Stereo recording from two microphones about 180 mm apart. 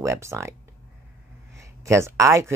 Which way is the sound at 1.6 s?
15° right (ahead or behind).